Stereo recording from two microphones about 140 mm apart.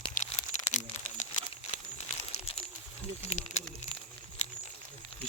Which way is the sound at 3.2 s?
50° left (ahead or behind).